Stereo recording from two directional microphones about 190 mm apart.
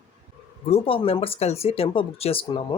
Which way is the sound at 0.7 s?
30° left (ahead or behind).